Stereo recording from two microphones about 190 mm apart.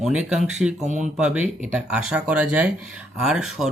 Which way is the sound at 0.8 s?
40° right (ahead or behind).